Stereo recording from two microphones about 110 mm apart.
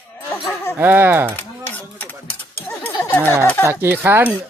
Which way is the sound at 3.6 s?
20° right (ahead or behind).